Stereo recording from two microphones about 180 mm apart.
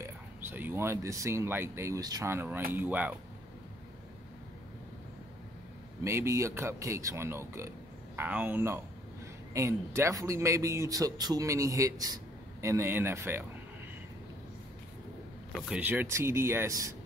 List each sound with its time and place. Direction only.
0.0 s speech: 10° right (ahead or behind)
6.0 s speech: 15° right (ahead or behind)
15.7 s speech: 10° right (ahead or behind)